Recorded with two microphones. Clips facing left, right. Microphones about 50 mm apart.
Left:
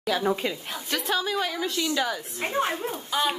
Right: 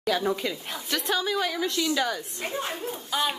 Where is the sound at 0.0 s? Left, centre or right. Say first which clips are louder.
Left 1 dB; centre.